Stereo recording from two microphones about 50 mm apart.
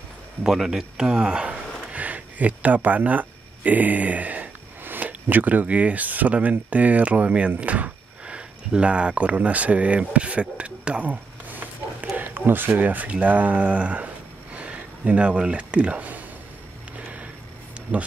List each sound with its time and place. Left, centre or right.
0.4 s speech: centre; by 16.3 s right
17.9 s speech: right